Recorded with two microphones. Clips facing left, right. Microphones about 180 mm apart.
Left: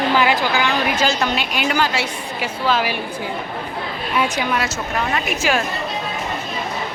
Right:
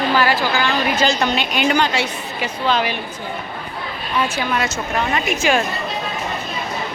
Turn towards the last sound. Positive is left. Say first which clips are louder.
# right 2 dB
turn(degrees=0)  # may be behind; listen again after turning